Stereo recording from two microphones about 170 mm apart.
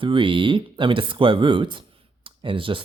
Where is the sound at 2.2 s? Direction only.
30° right (ahead or behind).